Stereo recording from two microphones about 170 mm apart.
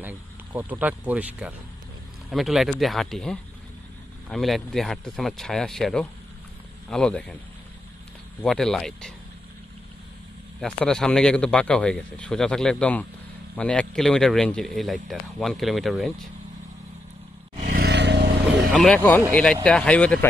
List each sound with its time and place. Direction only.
0.0 s speech: 10° right (ahead or behind)
8.4 s speech: 5° left (ahead or behind)
10.6 s speech: 5° left (ahead or behind)
17.6 s vehicle: 75° right (ahead or behind)
18.7 s speech: centre (ahead or behind)